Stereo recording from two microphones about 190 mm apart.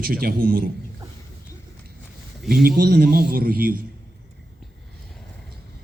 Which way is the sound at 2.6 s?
55° right (ahead or behind).